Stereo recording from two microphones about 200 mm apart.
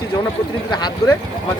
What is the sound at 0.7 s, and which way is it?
Speech, 20° left (ahead or behind).